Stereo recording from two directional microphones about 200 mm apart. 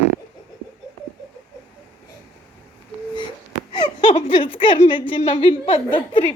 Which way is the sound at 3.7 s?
25° left (ahead or behind).